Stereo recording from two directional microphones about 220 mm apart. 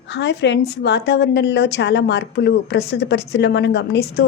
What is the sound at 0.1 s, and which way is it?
A woman's voice, 50° left (ahead or behind).